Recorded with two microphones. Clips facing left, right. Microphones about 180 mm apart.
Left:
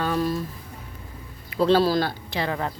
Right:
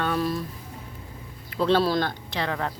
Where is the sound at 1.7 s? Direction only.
5° left (ahead or behind).